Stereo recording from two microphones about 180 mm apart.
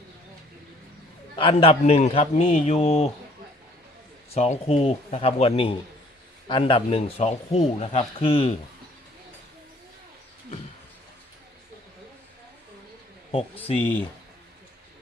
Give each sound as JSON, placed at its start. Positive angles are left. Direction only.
{"t": 1.4, "sound": "a man's voice", "side_deg": 30}
{"t": 4.4, "sound": "speech", "side_deg": 35}
{"t": 13.3, "sound": "speech", "side_deg": 30}